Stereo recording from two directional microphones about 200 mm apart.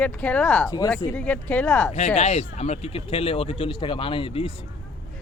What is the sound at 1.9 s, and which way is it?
Speech, 35° left (ahead or behind).